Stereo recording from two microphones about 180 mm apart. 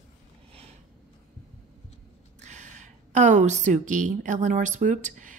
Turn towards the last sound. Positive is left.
turn(degrees=-45)  # may be behind; listen again after turning